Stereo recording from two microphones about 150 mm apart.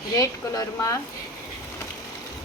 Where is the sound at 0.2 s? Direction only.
25° left (ahead or behind).